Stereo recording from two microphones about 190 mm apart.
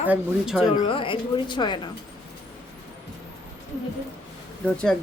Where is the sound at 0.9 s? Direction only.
25° left (ahead or behind).